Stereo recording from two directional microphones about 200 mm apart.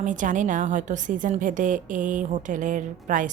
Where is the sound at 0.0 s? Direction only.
40° right (ahead or behind).